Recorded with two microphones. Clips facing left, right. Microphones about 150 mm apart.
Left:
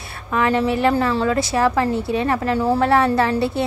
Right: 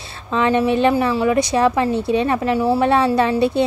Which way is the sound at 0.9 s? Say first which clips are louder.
Right 2 dB; 10° right (ahead or behind).